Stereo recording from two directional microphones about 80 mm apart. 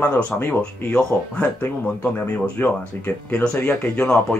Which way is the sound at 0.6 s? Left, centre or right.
Centre.